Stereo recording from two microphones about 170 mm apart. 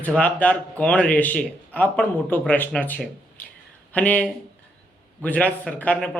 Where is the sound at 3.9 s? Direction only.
10° left (ahead or behind).